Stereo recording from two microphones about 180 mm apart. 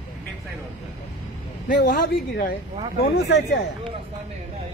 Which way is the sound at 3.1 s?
70° left (ahead or behind).